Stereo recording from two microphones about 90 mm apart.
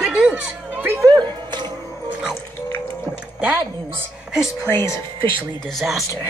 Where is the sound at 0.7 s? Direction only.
20° right (ahead or behind).